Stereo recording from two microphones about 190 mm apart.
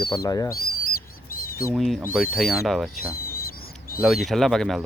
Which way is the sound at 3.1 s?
50° left (ahead or behind).